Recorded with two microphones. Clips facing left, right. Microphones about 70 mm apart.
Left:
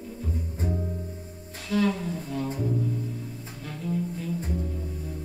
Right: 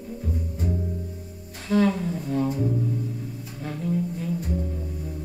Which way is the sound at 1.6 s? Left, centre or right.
Right.